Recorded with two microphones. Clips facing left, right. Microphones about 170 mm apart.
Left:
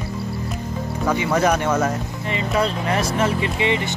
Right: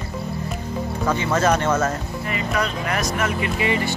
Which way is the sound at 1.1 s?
15° left (ahead or behind).